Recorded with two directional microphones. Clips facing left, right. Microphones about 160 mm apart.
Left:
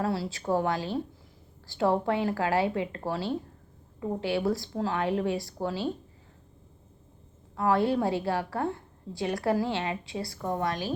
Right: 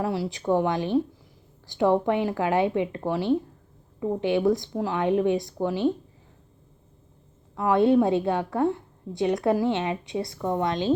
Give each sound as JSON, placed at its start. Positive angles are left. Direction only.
{"t": 0.0, "sound": "a woman's voice", "side_deg": -15}
{"t": 7.5, "sound": "a woman's voice", "side_deg": -20}